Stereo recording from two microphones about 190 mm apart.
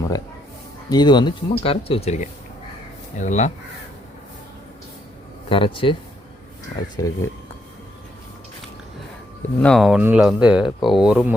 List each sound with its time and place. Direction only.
0.9 s speech: 20° left (ahead or behind); by 3.5 s 40° left (ahead or behind)
5.5 s speech: 30° left (ahead or behind)
6.9 s speech: 15° left (ahead or behind)
9.6 s speech: 5° left (ahead or behind)